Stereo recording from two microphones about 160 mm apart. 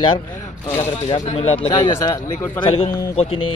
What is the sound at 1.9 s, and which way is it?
Speech, 20° left (ahead or behind).